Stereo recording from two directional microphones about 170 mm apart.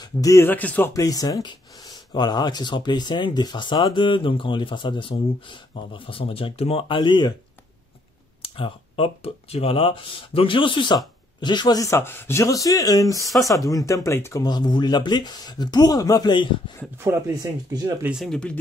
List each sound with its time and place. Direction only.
0.0 s speech: 20° left (ahead or behind)
8.4 s speech: 30° left (ahead or behind)
13.2 s speech: centre (ahead or behind)
13.7 s speech: 20° left (ahead or behind)
17.0 s speech: 15° right (ahead or behind)
18.1 s speech: centre (ahead or behind)